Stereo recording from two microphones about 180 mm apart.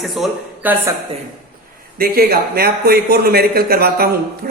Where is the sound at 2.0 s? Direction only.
55° right (ahead or behind).